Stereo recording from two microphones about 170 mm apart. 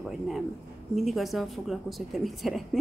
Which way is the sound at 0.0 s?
Centre (ahead or behind).